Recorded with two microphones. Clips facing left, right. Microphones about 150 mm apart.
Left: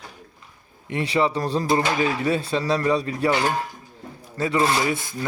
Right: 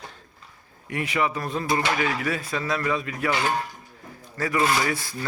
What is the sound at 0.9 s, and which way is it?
Speech, 30° left (ahead or behind).